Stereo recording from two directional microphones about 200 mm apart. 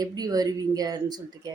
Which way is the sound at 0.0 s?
20° right (ahead or behind).